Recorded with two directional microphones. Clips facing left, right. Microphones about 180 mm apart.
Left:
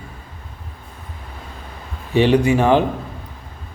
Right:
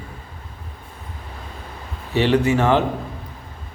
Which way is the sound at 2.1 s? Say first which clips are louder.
Left 3 dB; 15° left (ahead or behind).